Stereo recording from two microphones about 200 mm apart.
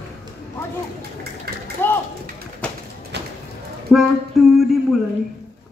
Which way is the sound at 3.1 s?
60° right (ahead or behind).